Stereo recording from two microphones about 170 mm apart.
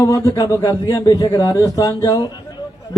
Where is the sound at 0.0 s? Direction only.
20° left (ahead or behind).